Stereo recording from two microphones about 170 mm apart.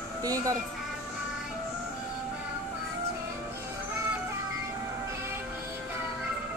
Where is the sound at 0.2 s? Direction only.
20° right (ahead or behind).